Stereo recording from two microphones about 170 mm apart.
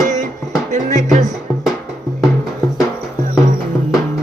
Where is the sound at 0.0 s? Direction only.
45° right (ahead or behind).